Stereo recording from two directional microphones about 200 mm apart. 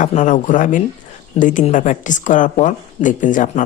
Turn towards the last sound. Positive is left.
turn(degrees=40)  # may be behind; listen again after turning